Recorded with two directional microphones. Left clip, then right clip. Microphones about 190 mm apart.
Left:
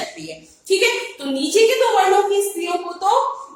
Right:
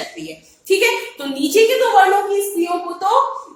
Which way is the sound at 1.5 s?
25° right (ahead or behind).